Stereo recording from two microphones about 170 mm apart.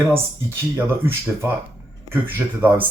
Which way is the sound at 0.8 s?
15° right (ahead or behind).